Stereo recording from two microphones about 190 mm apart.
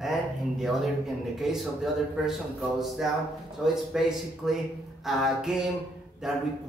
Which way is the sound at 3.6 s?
Centre (ahead or behind).